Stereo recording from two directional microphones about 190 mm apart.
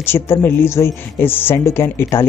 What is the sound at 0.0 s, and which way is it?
A woman's voice, 10° left (ahead or behind).